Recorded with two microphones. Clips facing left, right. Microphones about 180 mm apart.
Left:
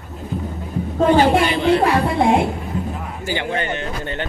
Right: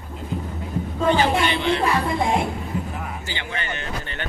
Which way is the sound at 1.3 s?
35° left (ahead or behind).